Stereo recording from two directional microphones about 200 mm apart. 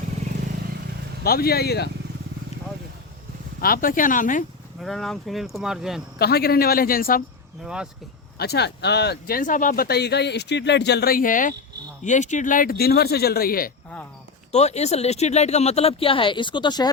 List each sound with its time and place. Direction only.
1.2 s a man's voice: 50° left (ahead or behind)
3.6 s a man's voice: 45° left (ahead or behind)
4.8 s speech: centre (ahead or behind)
6.1 s a man's voice: 50° left (ahead or behind)
7.6 s speech: 5° right (ahead or behind)
8.4 s a man's voice: 55° left (ahead or behind)
14.5 s speech: 35° left (ahead or behind)